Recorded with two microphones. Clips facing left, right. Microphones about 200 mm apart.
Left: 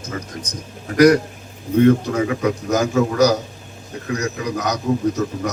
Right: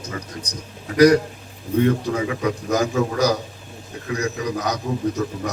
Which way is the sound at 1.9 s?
40° left (ahead or behind).